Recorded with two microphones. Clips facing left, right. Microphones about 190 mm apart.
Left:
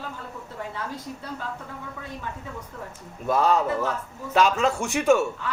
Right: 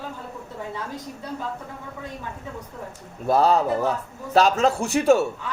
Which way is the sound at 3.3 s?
35° right (ahead or behind).